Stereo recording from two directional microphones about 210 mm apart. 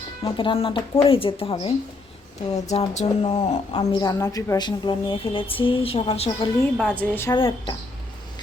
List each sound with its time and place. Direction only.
0.3 s a woman's voice: 25° left (ahead or behind)
2.6 s a sound: 35° left (ahead or behind)
3.8 s a woman's voice: 20° left (ahead or behind)
6.7 s a woman's voice: 5° left (ahead or behind)
7.3 s a woman's voice: 25° left (ahead or behind)